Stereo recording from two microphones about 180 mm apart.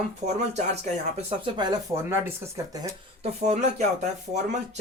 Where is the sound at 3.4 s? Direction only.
40° right (ahead or behind).